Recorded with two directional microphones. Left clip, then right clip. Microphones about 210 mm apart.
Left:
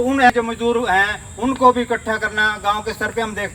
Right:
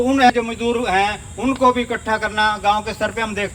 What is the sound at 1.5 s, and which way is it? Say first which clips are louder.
Speech: left 2 dB; 45° right (ahead or behind).